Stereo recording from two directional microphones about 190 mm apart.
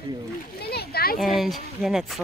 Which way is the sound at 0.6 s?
55° left (ahead or behind).